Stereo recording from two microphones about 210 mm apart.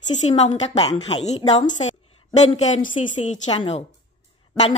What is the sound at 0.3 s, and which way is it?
A woman's voice, 30° left (ahead or behind).